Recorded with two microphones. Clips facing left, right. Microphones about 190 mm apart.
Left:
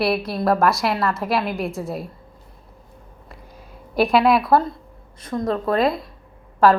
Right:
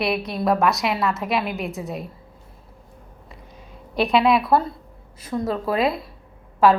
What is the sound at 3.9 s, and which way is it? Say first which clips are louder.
A woman's voice: left 2 dB; centre (ahead or behind).